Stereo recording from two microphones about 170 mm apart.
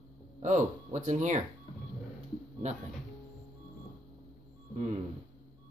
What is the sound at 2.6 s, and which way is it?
Speech, 40° right (ahead or behind).